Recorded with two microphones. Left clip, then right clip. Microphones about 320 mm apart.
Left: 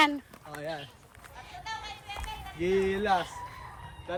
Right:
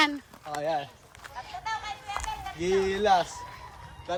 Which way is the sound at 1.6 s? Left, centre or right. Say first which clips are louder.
Right 5 dB; right.